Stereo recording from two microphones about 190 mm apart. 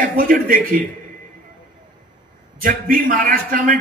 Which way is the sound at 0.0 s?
50° right (ahead or behind).